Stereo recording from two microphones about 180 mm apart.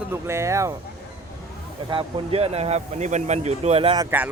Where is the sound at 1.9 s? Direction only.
30° right (ahead or behind).